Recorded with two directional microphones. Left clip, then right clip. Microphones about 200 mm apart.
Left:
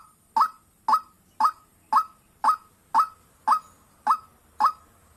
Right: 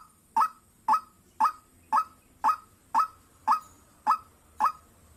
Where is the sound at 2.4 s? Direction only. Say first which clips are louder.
Left 4 dB; 20° left (ahead or behind).